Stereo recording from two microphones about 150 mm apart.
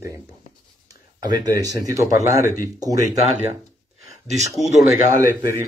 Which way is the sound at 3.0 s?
45° right (ahead or behind).